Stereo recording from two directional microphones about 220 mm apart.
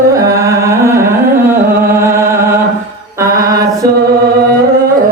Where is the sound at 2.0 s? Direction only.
10° right (ahead or behind).